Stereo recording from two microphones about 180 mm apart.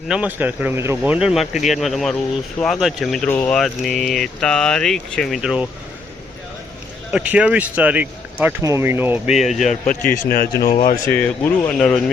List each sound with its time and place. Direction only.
0.1 s speech: 10° right (ahead or behind)
3.2 s speech: 15° left (ahead or behind)
3.6 s speech: centre (ahead or behind)
7.1 s speech: 5° right (ahead or behind)
9.6 s a man's voice: 40° left (ahead or behind)
10.1 s a man's voice: 55° left (ahead or behind)
10.7 s a man's voice: 45° left (ahead or behind)
11.0 s speech: 10° left (ahead or behind)